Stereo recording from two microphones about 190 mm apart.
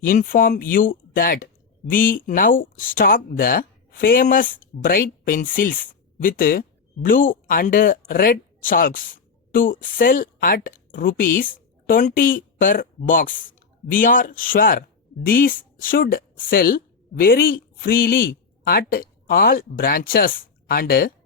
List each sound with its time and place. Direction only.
0.0 s speech: 45° left (ahead or behind)